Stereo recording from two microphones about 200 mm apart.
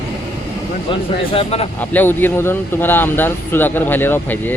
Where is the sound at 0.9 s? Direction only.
30° left (ahead or behind).